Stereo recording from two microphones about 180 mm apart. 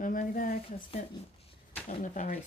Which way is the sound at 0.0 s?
50° left (ahead or behind).